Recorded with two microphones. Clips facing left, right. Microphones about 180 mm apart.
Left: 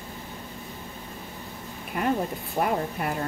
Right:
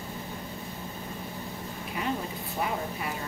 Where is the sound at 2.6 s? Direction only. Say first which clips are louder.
Left 5 dB; 55° left (ahead or behind).